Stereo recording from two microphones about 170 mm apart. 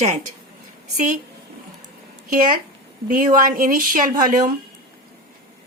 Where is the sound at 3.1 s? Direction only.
55° right (ahead or behind).